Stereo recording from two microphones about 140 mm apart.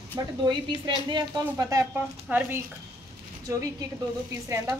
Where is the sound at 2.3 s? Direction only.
10° right (ahead or behind).